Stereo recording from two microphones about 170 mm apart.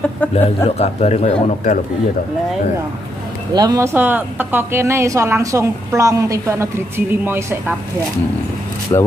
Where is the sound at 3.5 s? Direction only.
25° right (ahead or behind).